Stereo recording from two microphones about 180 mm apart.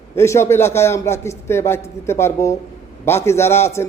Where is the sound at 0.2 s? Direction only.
15° left (ahead or behind).